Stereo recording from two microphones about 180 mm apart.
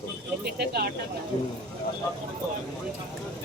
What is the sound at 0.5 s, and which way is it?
Speech, 60° right (ahead or behind).